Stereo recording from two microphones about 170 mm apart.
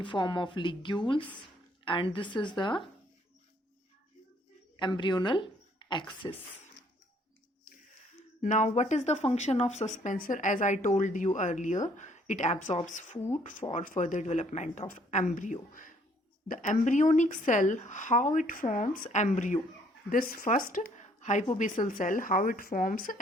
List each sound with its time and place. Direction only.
0.0 s speech: 30° left (ahead or behind)
4.8 s speech: 25° left (ahead or behind)
8.4 s a woman's voice: 45° left (ahead or behind)
20.1 s speech: 60° left (ahead or behind)
20.7 s a sound: 45° left (ahead or behind)
21.6 s a woman's voice: 50° left (ahead or behind)